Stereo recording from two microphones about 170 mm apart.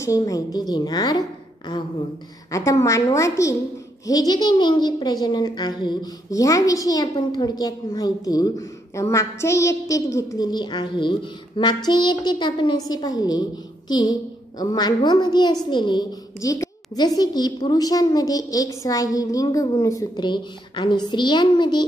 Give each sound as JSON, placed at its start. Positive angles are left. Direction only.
{"t": 0.0, "sound": "speech", "side_deg": 20}
{"t": 2.5, "sound": "a woman's voice", "side_deg": 20}